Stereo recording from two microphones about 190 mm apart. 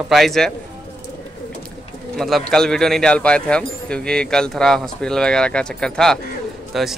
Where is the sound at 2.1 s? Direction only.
Centre (ahead or behind).